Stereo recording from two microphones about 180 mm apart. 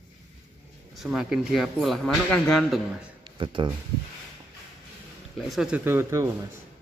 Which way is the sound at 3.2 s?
25° right (ahead or behind).